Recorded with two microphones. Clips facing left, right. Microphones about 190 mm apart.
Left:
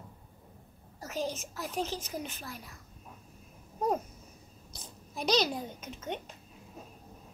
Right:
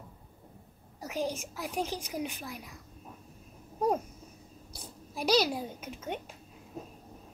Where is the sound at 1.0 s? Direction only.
10° right (ahead or behind).